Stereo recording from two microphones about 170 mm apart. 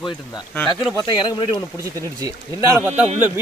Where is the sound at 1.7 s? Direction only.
20° right (ahead or behind).